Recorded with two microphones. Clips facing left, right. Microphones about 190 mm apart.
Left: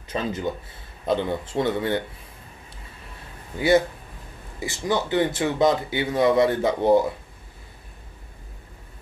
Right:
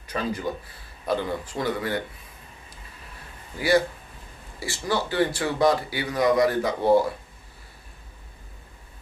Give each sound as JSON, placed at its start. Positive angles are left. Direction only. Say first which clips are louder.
{"t": 0.1, "sound": "speech", "louder": "left 1 dB", "side_deg": 20}
{"t": 3.5, "sound": "speech", "louder": "left 3 dB", "side_deg": 20}